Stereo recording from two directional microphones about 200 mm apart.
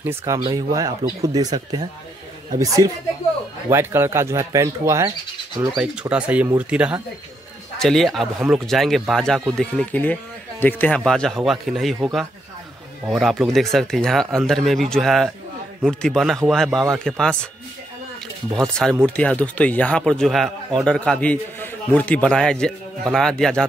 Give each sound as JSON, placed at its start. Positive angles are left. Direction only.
{"t": 0.0, "sound": "speech", "side_deg": -15}
{"t": 18.6, "sound": "speech", "side_deg": 5}